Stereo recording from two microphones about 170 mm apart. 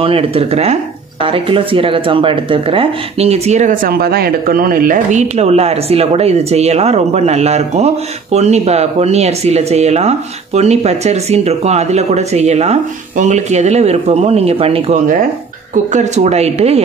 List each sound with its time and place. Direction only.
0.0 s speech: 35° right (ahead or behind)